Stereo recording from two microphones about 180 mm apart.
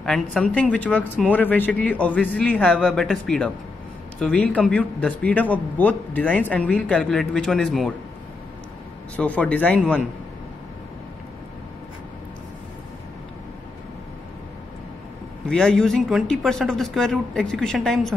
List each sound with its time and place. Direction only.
0.0 s speech: 5° left (ahead or behind)
9.1 s speech: 10° left (ahead or behind)
15.4 s speech: 5° left (ahead or behind)